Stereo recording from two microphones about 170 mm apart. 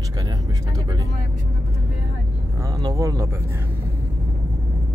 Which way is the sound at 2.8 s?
20° right (ahead or behind).